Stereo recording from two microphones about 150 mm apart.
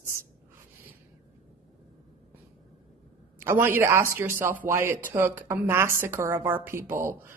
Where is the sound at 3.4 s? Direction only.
15° right (ahead or behind).